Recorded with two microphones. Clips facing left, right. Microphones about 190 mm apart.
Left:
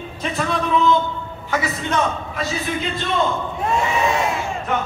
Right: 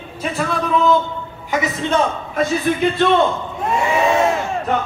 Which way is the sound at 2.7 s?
50° right (ahead or behind).